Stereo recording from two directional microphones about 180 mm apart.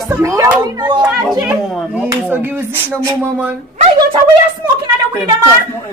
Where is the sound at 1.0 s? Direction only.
Centre (ahead or behind).